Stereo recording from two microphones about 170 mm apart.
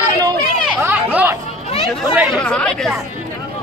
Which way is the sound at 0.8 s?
10° right (ahead or behind).